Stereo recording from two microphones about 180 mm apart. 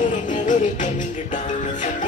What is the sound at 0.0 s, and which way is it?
Music, 45° left (ahead or behind).